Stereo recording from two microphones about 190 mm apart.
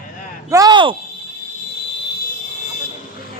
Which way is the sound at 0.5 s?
20° right (ahead or behind).